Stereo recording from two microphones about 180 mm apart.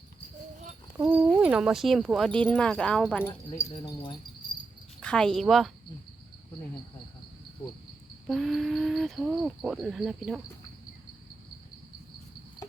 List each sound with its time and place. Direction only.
0.9 s speech: 5° right (ahead or behind)
3.6 s speech: 25° left (ahead or behind)
4.9 s speech: 5° left (ahead or behind)
8.3 s speech: centre (ahead or behind)